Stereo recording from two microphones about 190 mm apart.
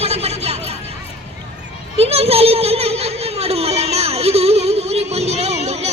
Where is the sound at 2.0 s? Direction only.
30° right (ahead or behind).